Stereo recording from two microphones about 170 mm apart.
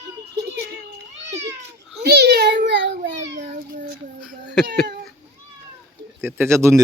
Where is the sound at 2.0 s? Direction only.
75° right (ahead or behind); by 3.1 s 90° right.